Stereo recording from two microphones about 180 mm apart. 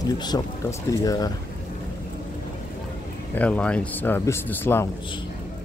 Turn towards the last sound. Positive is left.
turn(degrees=15)  # may be behind; listen again after turning